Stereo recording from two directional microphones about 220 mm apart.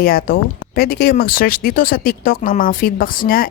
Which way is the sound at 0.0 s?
40° left (ahead or behind).